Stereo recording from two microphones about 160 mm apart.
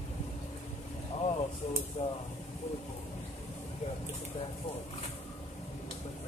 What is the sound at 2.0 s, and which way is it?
Speech, 40° left (ahead or behind).